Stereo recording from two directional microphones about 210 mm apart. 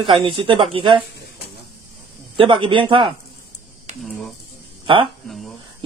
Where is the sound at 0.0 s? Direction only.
25° right (ahead or behind).